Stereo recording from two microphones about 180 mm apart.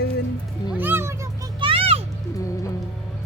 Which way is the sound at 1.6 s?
30° right (ahead or behind).